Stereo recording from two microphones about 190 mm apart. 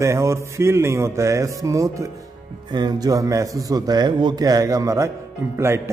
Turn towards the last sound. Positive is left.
turn(degrees=-15)  # may be behind; listen again after turning